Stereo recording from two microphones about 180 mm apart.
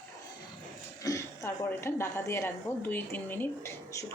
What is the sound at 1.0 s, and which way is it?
Speech, 15° left (ahead or behind).